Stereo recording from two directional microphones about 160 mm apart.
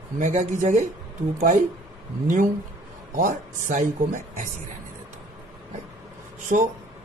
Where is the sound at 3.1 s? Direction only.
55° right (ahead or behind).